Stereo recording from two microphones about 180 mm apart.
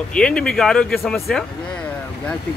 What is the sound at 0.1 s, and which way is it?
A man's voice, 5° left (ahead or behind).